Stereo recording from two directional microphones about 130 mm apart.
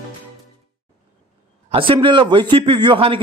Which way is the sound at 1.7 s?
40° right (ahead or behind).